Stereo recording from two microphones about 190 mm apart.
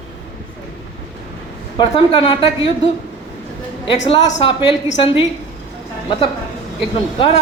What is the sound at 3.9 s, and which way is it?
A woman's voice, 30° left (ahead or behind).